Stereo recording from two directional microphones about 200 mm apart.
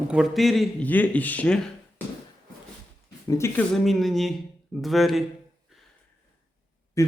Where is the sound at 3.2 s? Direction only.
15° left (ahead or behind).